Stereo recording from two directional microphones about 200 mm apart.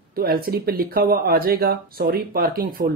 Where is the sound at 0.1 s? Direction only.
50° right (ahead or behind).